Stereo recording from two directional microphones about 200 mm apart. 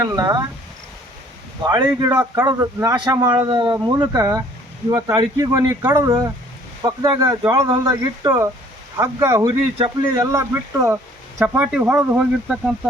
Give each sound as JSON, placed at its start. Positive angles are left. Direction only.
{"t": 0.0, "sound": "speech", "side_deg": -15}
{"t": 1.6, "sound": "speech", "side_deg": -20}
{"t": 9.3, "sound": "speech", "side_deg": -25}
{"t": 10.3, "sound": "speech", "side_deg": -15}